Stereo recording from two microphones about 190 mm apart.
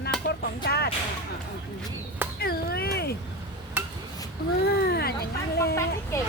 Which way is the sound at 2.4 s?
55° left (ahead or behind).